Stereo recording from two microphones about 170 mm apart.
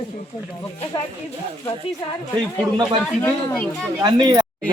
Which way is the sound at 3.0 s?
10° left (ahead or behind).